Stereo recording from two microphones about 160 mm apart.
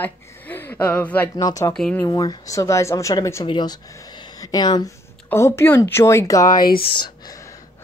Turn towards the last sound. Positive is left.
turn(degrees=25)  # may be behind; listen again after turning